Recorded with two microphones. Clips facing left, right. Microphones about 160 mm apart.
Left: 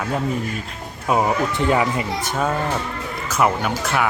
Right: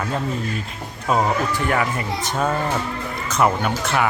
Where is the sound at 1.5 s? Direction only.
20° left (ahead or behind).